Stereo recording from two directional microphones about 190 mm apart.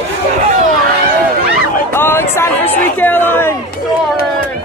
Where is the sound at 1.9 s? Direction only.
10° left (ahead or behind).